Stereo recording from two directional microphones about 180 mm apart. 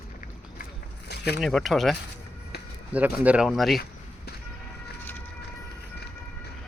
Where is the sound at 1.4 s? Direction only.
Centre (ahead or behind).